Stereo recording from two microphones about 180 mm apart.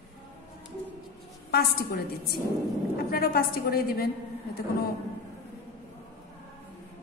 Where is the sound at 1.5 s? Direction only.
60° left (ahead or behind).